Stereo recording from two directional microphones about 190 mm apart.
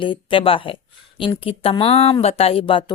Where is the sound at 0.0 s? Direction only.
25° left (ahead or behind).